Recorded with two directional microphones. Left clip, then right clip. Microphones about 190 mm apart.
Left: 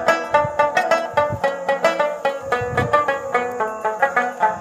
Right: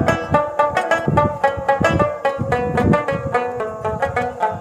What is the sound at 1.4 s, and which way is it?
Music, 40° right (ahead or behind).